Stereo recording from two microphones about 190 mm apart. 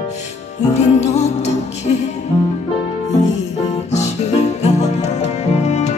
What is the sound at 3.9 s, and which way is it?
Music, 35° left (ahead or behind).